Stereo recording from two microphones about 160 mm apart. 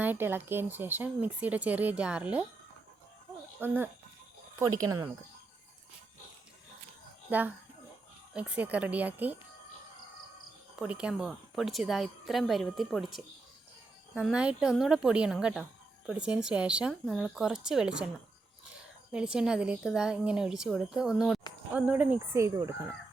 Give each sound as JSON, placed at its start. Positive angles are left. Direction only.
{"t": 0.0, "sound": "speech", "side_deg": -10}
{"t": 3.6, "sound": "speech", "side_deg": -10}
{"t": 7.3, "sound": "a woman's voice", "side_deg": -10}
{"t": 10.8, "sound": "a woman's voice", "side_deg": -5}
{"t": 19.1, "sound": "a woman's voice", "side_deg": -5}